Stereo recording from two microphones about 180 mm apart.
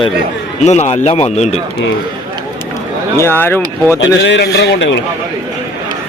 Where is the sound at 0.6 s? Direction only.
40° left (ahead or behind).